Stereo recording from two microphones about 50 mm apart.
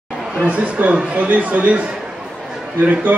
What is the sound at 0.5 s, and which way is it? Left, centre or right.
Speech, right.